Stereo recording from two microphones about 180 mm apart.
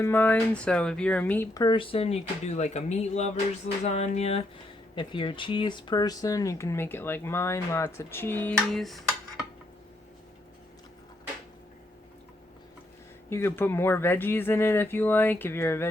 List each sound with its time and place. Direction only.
0.0 s speech: 10° left (ahead or behind)
1.5 s speech: 25° left (ahead or behind); by 9.0 s centre (ahead or behind)
13.3 s speech: 15° left (ahead or behind)